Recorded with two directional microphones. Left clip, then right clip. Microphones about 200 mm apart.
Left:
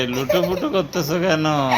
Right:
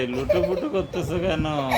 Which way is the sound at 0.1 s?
20° left (ahead or behind).